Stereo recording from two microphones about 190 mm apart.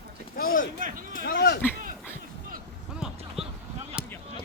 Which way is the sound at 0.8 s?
45° right (ahead or behind).